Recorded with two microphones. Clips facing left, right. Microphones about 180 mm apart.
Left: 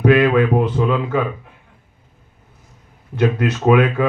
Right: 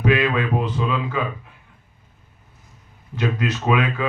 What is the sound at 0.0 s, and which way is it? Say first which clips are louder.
Speech: left 6 dB; 55° left (ahead or behind).